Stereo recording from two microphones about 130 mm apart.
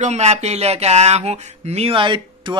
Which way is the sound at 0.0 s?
60° right (ahead or behind).